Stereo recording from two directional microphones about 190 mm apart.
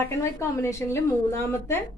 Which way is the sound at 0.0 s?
15° left (ahead or behind).